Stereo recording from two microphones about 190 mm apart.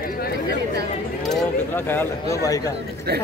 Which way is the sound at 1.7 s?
10° left (ahead or behind).